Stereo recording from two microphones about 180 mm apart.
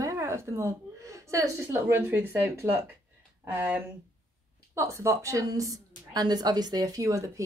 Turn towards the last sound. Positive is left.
turn(degrees=-15)  # may be behind; listen again after turning